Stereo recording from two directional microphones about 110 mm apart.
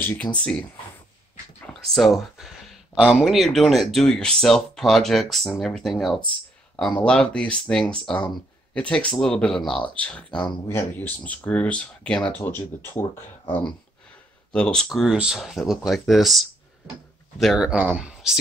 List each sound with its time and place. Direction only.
0.1 s speech: 10° left (ahead or behind)
1.7 s a sound: 5° left (ahead or behind)
3.3 s speech: centre (ahead or behind)
12.4 s speech: 20° left (ahead or behind)
14.5 s speech: 10° left (ahead or behind)
14.9 s speech: 5° right (ahead or behind)